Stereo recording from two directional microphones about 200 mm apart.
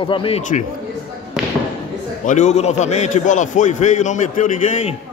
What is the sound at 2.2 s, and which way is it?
A man's voice, 35° left (ahead or behind).